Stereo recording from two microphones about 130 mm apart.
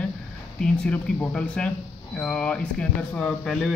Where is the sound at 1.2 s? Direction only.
10° left (ahead or behind).